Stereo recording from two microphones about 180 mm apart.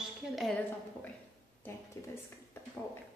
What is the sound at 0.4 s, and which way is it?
Speech, 5° left (ahead or behind).